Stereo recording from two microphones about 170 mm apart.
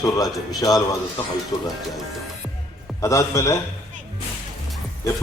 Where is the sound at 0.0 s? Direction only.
20° left (ahead or behind).